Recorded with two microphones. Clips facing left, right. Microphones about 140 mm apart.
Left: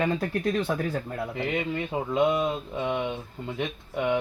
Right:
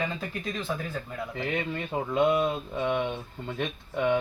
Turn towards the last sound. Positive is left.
turn(degrees=10)  # may be behind; listen again after turning